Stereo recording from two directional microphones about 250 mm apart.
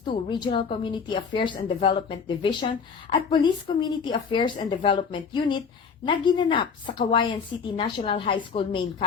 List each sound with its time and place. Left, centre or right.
0.0 s speech: centre